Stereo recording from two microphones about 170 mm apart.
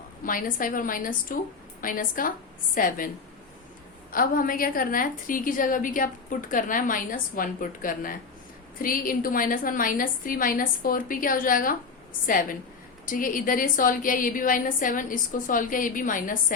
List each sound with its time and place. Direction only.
0.3 s a woman's voice: 55° left (ahead or behind)
4.1 s a woman's voice: 55° left (ahead or behind)